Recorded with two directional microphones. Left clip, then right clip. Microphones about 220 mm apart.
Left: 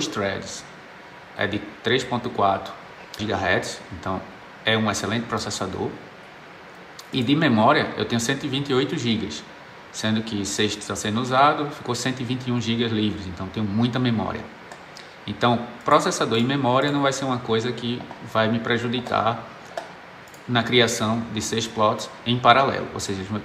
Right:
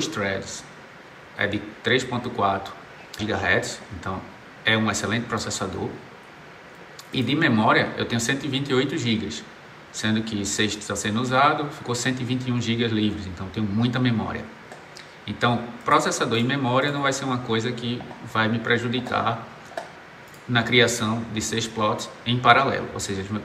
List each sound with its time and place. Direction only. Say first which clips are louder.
0.0 s a man's voice: even; 15° left (ahead or behind)
7.1 s a man's voice: left 1 dB; 15° left (ahead or behind)